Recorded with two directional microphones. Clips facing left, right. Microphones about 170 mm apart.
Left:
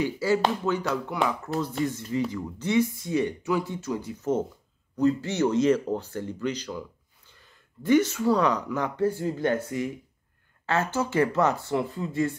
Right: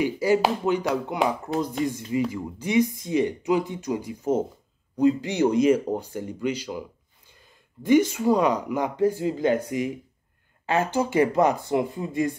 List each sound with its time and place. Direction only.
0.0 s speech: 15° right (ahead or behind)